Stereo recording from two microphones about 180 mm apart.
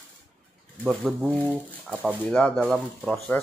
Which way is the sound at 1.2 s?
5° right (ahead or behind).